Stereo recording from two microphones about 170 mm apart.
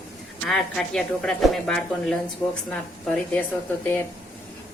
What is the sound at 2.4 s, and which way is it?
Speech, 15° left (ahead or behind).